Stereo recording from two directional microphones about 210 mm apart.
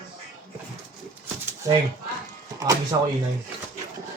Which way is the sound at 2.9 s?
20° right (ahead or behind).